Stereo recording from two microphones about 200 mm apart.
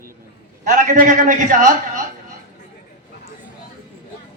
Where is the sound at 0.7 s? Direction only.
40° right (ahead or behind).